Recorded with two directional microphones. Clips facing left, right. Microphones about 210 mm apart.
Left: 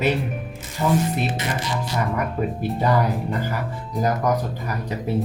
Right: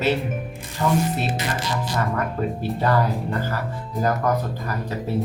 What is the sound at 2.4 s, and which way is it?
Speech, 15° left (ahead or behind).